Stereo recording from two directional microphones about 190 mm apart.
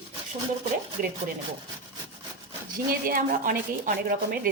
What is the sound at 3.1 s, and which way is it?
A woman's voice, 50° right (ahead or behind).